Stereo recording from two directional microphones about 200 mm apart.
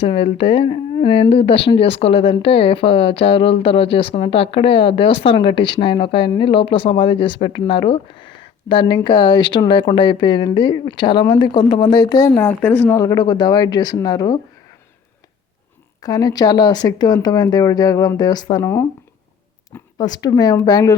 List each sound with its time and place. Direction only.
0.0 s speech: 30° left (ahead or behind)
12.3 s speech: 10° left (ahead or behind)
16.0 s speech: 20° left (ahead or behind)